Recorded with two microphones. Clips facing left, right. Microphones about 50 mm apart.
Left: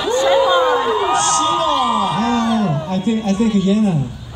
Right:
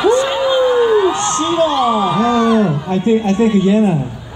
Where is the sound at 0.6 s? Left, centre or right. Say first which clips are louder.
Right 4 dB; left.